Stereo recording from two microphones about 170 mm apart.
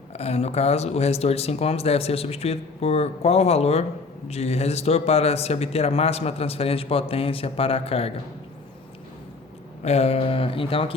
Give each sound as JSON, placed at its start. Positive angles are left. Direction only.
{"t": 0.1, "sound": "speech", "side_deg": 40}
{"t": 9.8, "sound": "speech", "side_deg": 40}